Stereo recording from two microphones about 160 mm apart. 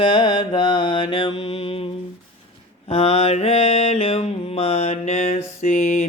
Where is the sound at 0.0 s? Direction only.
30° left (ahead or behind).